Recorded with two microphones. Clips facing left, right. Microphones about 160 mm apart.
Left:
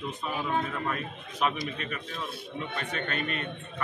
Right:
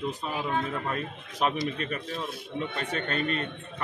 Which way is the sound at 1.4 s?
35° right (ahead or behind).